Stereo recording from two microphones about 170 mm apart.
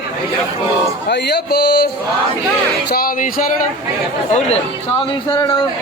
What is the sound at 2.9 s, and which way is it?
Speech, 60° left (ahead or behind).